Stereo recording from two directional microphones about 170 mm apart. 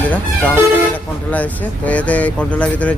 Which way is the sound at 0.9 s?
10° left (ahead or behind).